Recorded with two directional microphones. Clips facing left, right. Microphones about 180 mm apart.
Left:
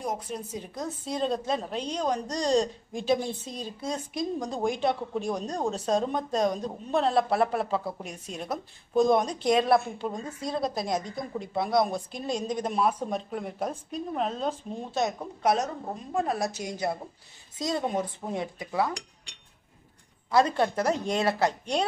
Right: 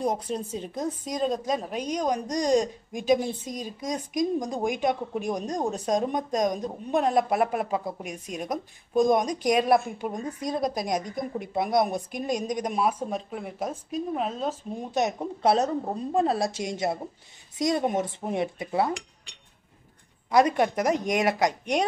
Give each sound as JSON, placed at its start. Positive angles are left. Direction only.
{"t": 0.0, "sound": "speech", "side_deg": -35}
{"t": 20.2, "sound": "speech", "side_deg": -15}